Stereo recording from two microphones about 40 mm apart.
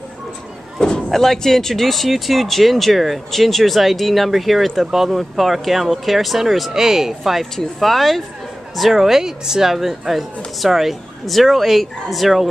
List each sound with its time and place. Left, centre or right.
0.7 s a sound: centre
1.1 s speech: centre
7.5 s speech: centre